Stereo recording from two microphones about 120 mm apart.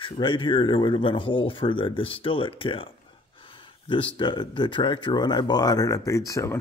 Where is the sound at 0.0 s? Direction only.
45° left (ahead or behind).